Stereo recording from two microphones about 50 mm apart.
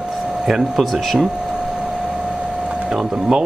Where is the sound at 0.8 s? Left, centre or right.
Centre.